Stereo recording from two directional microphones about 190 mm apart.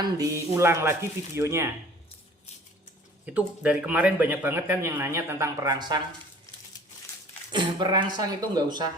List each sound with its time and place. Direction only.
0.0 s speech: 15° right (ahead or behind)
3.2 s speech: 5° right (ahead or behind)
7.5 s speech: 25° right (ahead or behind)